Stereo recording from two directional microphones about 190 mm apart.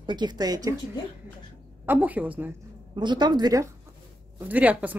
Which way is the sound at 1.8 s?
10° right (ahead or behind).